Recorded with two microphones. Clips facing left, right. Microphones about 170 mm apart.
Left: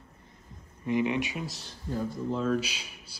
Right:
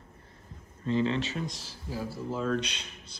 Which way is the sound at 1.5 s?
Centre (ahead or behind).